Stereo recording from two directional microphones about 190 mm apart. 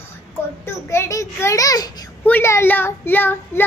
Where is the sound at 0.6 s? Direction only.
15° left (ahead or behind).